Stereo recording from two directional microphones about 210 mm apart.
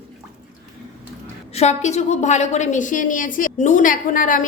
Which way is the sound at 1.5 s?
30° left (ahead or behind).